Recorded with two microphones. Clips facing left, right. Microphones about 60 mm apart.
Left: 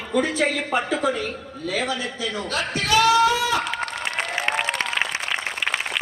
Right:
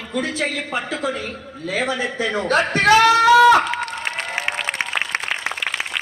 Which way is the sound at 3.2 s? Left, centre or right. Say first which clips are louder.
Right 9 dB; right.